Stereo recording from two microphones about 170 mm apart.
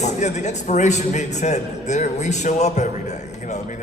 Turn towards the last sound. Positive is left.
turn(degrees=45)  # may be behind; listen again after turning